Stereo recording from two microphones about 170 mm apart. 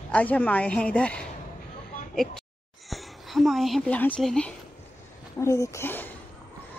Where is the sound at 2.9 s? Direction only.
Centre (ahead or behind).